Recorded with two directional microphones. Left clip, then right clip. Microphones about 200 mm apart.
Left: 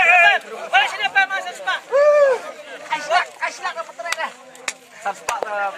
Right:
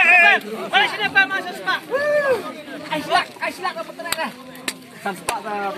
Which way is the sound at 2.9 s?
30° right (ahead or behind).